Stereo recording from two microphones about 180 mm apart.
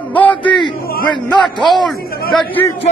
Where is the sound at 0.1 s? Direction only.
30° left (ahead or behind).